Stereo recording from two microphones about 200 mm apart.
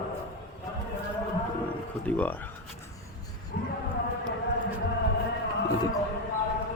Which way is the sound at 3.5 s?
55° left (ahead or behind).